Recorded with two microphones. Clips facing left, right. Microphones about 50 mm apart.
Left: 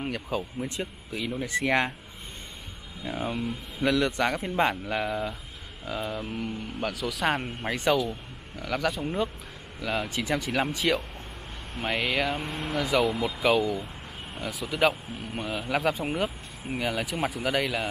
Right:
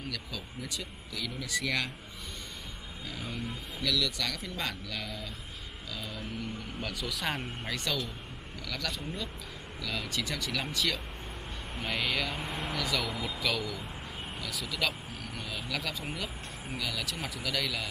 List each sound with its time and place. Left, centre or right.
0.0 s a man's voice: left
3.0 s a man's voice: left
6.9 s speech: centre
7.2 s speech: left
10.0 s speech: centre
11.8 s speech: centre
12.4 s speech: centre
12.7 s a man's voice: centre